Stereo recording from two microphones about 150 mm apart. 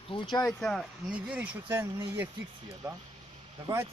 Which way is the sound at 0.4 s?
5° left (ahead or behind).